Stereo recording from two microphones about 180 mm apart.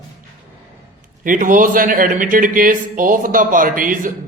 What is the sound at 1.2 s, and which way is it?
A man's voice, 45° right (ahead or behind).